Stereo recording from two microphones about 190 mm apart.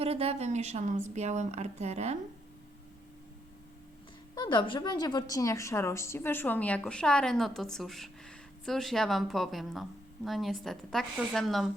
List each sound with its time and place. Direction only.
0.0 s speech: 30° right (ahead or behind)
4.4 s a woman's voice: 25° left (ahead or behind); by 11.7 s centre (ahead or behind)